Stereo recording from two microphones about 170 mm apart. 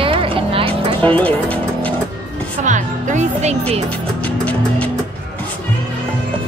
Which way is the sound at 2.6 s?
45° right (ahead or behind).